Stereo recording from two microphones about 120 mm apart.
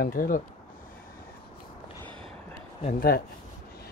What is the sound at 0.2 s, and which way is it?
Speech, 90° left.